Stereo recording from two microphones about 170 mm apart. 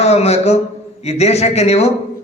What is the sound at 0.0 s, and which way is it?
A man's voice, 40° left (ahead or behind).